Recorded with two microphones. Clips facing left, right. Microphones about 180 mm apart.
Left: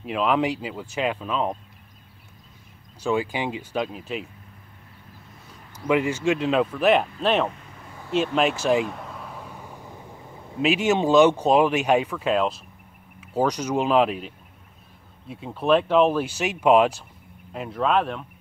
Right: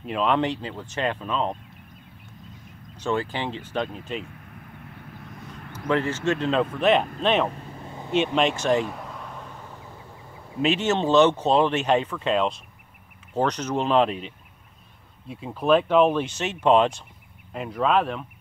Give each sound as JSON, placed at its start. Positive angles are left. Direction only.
{"t": 0.0, "sound": "speech", "side_deg": 5}
{"t": 3.0, "sound": "speech", "side_deg": 10}
{"t": 5.9, "sound": "speech", "side_deg": 10}
{"t": 7.5, "sound": "vehicle", "side_deg": -30}
{"t": 8.4, "sound": "a sound", "side_deg": 5}
{"t": 10.6, "sound": "speech", "side_deg": 10}